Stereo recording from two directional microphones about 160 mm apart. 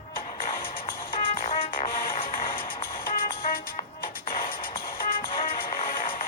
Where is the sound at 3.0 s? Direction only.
65° left (ahead or behind).